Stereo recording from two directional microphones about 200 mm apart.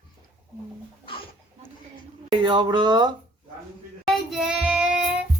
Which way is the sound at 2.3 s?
20° right (ahead or behind).